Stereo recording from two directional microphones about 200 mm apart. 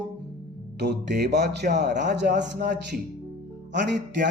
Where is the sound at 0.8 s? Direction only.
55° right (ahead or behind).